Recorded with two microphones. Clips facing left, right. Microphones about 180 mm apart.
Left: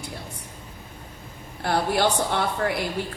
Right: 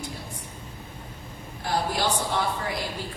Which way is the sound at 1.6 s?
65° left (ahead or behind).